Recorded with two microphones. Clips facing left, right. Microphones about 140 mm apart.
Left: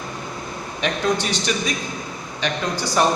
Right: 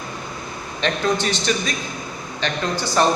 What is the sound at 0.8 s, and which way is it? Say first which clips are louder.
A man's voice: right 1 dB; 10° left (ahead or behind).